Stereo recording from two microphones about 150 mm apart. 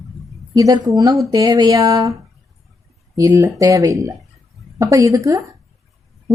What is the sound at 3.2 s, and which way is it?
Speech, 20° right (ahead or behind).